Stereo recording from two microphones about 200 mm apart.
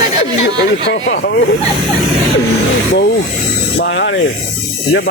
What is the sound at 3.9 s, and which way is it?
Speech, 70° left (ahead or behind).